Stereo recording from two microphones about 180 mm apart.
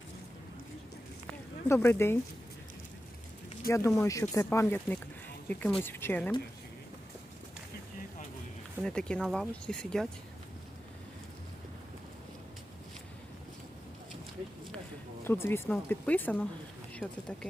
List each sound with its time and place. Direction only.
1.3 s a sound: 15° left (ahead or behind)
3.7 s speech: 15° left (ahead or behind)
8.8 s speech: 5° left (ahead or behind)
15.2 s speech: 10° left (ahead or behind)